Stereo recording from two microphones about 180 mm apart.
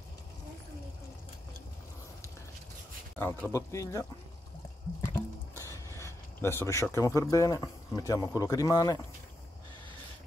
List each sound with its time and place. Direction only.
3.2 s speech: 10° left (ahead or behind)
5.0 s a sound: 15° left (ahead or behind)
8.4 s speech: 20° left (ahead or behind)